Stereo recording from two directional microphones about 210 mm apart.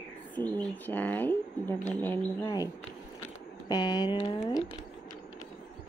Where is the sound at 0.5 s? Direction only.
10° left (ahead or behind).